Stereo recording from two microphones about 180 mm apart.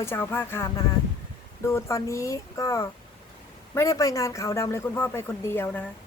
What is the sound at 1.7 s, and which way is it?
A man's voice, 15° left (ahead or behind).